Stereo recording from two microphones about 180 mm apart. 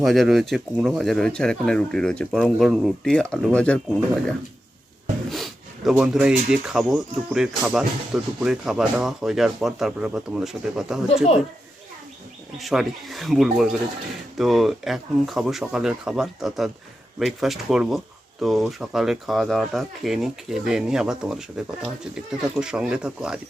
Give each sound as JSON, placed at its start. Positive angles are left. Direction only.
{"t": 0.0, "sound": "speech", "side_deg": 0}
{"t": 12.5, "sound": "speech", "side_deg": 0}